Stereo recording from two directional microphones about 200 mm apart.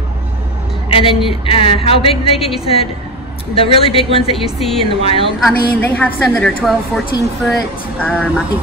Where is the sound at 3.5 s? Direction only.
30° left (ahead or behind).